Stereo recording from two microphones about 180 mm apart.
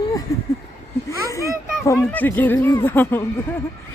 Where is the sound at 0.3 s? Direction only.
20° left (ahead or behind).